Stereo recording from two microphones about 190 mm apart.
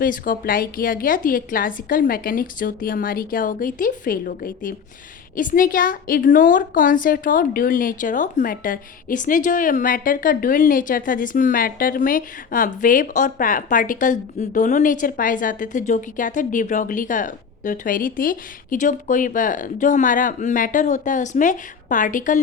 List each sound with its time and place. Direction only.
0.0 s a woman's voice: 45° left (ahead or behind)